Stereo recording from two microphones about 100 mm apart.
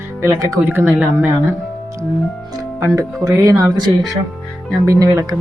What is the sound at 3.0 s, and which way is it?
A woman's voice, 35° right (ahead or behind).